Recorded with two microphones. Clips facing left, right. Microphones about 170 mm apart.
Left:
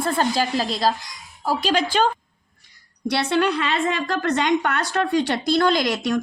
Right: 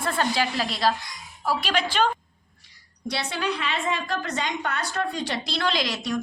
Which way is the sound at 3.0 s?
65° left (ahead or behind).